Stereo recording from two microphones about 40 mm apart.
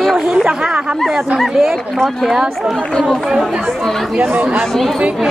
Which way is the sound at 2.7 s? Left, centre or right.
Centre.